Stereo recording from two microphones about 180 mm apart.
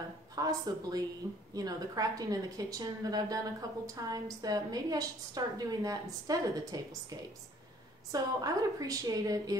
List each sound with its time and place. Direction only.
0.4 s a woman's voice: 20° right (ahead or behind)